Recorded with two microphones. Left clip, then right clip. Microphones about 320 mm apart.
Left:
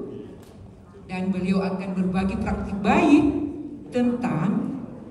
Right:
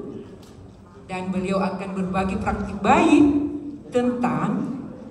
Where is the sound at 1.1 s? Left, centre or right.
Right.